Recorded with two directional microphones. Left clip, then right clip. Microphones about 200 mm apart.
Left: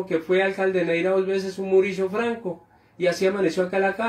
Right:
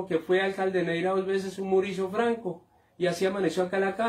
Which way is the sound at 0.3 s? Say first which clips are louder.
Left 5 dB; 15° right (ahead or behind).